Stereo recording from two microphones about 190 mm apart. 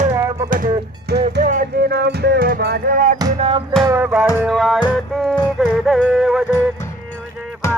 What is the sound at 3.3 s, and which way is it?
Music, 30° right (ahead or behind).